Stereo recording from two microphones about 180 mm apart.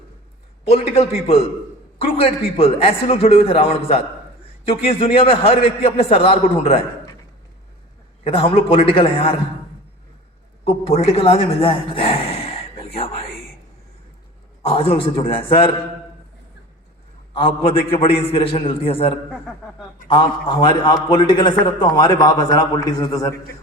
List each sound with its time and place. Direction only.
0.6 s a man's voice: 35° left (ahead or behind)
8.2 s a man's voice: 30° left (ahead or behind)
10.7 s a man's voice: 35° left (ahead or behind)
14.6 s a man's voice: 30° left (ahead or behind)
17.9 s a man's voice: 30° left (ahead or behind)